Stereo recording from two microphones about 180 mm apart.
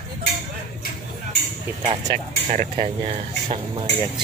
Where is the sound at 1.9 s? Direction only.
40° right (ahead or behind).